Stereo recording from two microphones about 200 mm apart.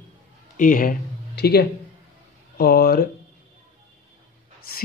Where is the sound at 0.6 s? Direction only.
45° left (ahead or behind).